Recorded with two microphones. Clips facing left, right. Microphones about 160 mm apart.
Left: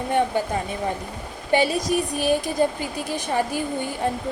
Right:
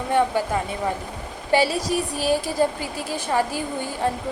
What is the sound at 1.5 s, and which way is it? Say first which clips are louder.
Speech: even; 20° left (ahead or behind).